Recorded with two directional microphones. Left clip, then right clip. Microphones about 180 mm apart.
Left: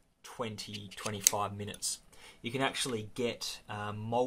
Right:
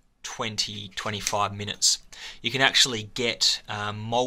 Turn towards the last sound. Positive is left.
turn(degrees=-10)  # may be behind; listen again after turning